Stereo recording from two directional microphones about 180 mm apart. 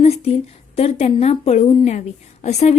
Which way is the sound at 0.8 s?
35° left (ahead or behind).